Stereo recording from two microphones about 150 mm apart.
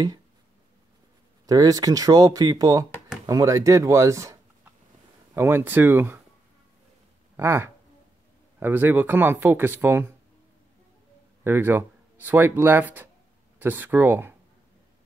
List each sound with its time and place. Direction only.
1.4 s speech: 25° right (ahead or behind)
7.3 s speech: 15° right (ahead or behind)
11.4 s speech: 15° right (ahead or behind)